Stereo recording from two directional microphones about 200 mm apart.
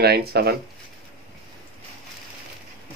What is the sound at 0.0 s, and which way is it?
Speech, 50° right (ahead or behind).